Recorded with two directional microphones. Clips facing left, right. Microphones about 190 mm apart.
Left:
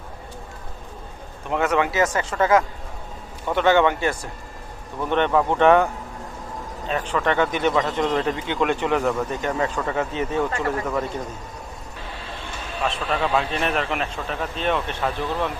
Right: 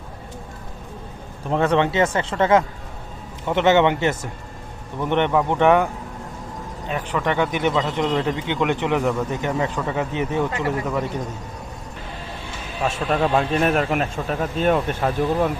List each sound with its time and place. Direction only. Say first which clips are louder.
1.5 s a man's voice: right 3 dB; 30° right (ahead or behind); by 11.2 s 15° right (ahead or behind)
12.8 s speech: right 3 dB; 45° right (ahead or behind)